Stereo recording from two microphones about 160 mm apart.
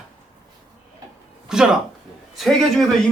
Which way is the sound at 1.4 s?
5° right (ahead or behind).